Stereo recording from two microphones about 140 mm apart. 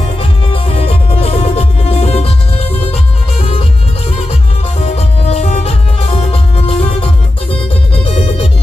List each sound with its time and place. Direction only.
0.5 s music: 45° left (ahead or behind)
4.8 s music: 50° left (ahead or behind)